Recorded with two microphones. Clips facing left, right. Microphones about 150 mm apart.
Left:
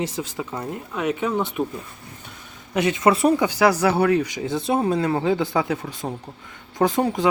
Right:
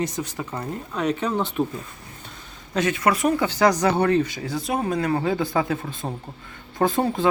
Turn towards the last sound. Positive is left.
turn(degrees=15)  # may be behind; listen again after turning